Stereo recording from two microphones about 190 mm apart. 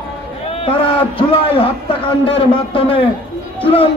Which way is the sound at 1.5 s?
30° left (ahead or behind).